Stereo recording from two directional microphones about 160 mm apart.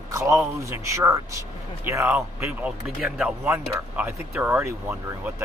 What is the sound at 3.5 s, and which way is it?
Speech, 15° right (ahead or behind).